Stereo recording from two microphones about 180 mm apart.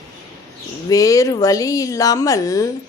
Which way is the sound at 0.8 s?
20° left (ahead or behind).